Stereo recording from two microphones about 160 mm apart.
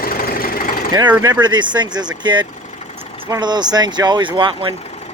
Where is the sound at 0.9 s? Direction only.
25° right (ahead or behind).